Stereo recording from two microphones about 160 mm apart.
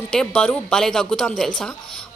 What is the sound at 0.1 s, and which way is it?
A woman's voice, 5° left (ahead or behind).